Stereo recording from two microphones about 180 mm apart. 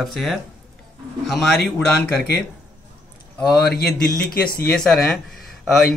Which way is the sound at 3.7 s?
60° left (ahead or behind).